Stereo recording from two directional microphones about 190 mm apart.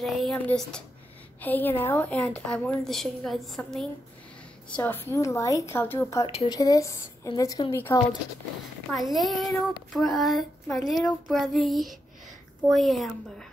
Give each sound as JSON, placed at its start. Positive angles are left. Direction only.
{"t": 0.0, "sound": "a woman's voice", "side_deg": 0}
{"t": 6.2, "sound": "a woman's voice", "side_deg": 30}
{"t": 8.9, "sound": "a woman's voice", "side_deg": 0}